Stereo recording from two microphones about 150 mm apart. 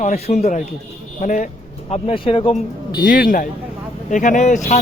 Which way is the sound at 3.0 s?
65° left (ahead or behind).